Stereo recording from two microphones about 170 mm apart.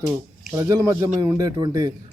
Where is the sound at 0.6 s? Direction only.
20° right (ahead or behind).